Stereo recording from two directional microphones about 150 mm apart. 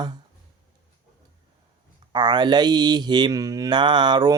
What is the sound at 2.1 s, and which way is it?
Mantra, 30° right (ahead or behind).